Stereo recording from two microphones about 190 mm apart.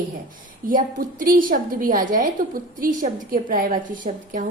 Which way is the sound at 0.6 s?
45° right (ahead or behind).